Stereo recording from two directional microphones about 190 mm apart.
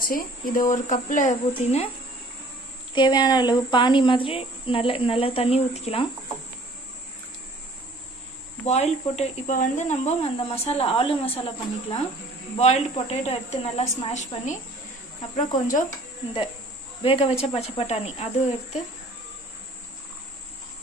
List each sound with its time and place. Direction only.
0.0 s speech: 45° left (ahead or behind)
2.9 s speech: 25° left (ahead or behind)
8.6 s speech: 35° left (ahead or behind)
17.0 s speech: 30° left (ahead or behind)